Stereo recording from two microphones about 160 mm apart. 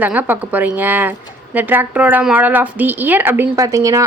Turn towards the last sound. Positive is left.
turn(degrees=-20)  # may be behind; listen again after turning